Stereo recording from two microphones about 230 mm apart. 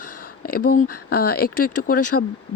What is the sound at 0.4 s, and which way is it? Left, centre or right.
Speech, left.